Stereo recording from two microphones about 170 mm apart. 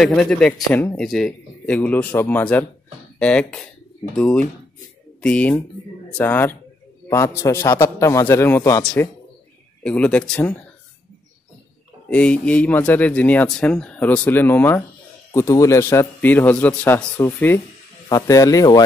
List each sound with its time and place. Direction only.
0.0 s speech: 5° left (ahead or behind)
12.1 s speech: 5° left (ahead or behind)